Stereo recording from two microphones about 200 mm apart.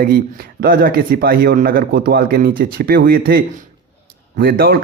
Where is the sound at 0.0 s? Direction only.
50° right (ahead or behind).